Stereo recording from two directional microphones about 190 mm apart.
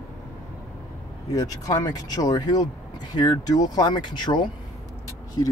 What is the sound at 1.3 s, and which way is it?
Speech, 20° left (ahead or behind).